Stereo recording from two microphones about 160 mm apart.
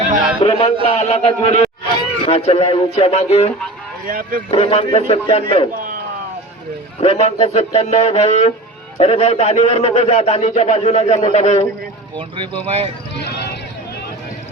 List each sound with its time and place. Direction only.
0.4 s a man's voice: 40° left (ahead or behind)
4.1 s speech: 65° right (ahead or behind)
4.5 s a man's voice: 40° left (ahead or behind)
7.0 s a man's voice: 40° left (ahead or behind)
12.1 s speech: 30° right (ahead or behind)
13.2 s a sound: 90° left